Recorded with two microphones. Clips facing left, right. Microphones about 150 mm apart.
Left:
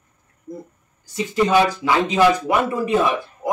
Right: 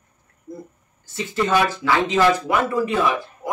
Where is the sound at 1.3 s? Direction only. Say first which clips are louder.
Left 3 dB; 15° left (ahead or behind).